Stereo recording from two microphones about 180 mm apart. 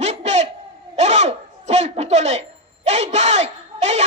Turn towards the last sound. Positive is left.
turn(degrees=-40)  # may be behind; listen again after turning